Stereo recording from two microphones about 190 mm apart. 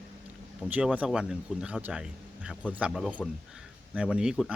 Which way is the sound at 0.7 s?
5° right (ahead or behind).